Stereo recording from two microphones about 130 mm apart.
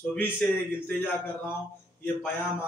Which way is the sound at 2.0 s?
15° left (ahead or behind).